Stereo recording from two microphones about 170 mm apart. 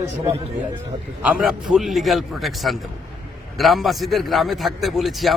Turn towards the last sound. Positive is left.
turn(degrees=0)  # may be behind; listen again after turning